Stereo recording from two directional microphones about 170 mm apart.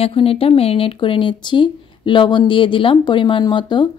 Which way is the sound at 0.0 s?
35° left (ahead or behind).